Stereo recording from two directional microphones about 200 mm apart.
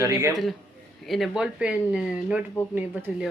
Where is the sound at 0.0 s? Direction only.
15° right (ahead or behind).